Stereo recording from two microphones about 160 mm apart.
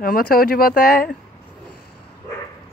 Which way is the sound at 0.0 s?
65° left (ahead or behind).